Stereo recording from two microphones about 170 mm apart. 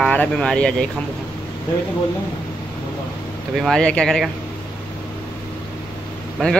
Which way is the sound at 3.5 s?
Centre (ahead or behind).